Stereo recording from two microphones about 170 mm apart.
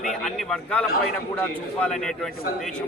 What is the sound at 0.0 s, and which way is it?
A man's voice, centre (ahead or behind).